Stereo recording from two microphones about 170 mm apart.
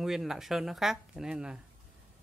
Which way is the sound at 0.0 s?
Centre (ahead or behind).